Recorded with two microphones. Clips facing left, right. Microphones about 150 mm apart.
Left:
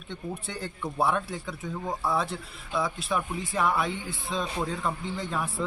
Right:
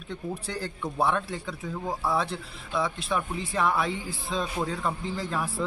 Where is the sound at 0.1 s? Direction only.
Centre (ahead or behind).